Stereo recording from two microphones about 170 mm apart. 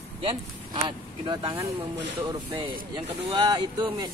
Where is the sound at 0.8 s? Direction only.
25° right (ahead or behind).